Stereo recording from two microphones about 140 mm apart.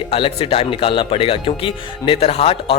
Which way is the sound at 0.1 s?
40° left (ahead or behind).